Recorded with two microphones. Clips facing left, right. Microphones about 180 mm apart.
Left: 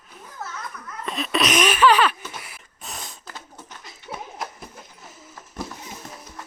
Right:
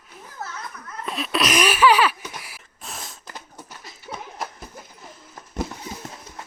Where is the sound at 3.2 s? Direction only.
15° right (ahead or behind).